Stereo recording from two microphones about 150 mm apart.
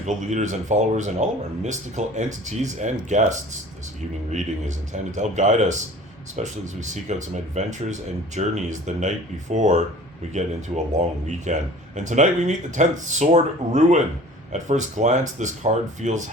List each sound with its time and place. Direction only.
0.0 s speech: 50° right (ahead or behind)
11.0 s speech: 50° right (ahead or behind)